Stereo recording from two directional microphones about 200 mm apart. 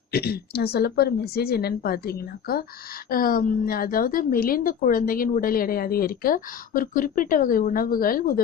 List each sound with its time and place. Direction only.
0.1 s a woman's voice: 50° left (ahead or behind)